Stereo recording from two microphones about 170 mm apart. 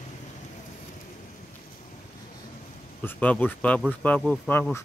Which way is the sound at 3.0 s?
10° left (ahead or behind).